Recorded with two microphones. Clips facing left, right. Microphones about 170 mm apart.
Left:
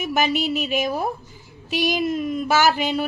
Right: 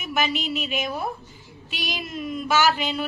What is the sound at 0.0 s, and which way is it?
A woman's voice, 45° left (ahead or behind).